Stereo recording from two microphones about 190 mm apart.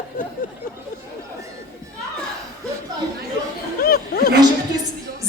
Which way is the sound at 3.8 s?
55° left (ahead or behind).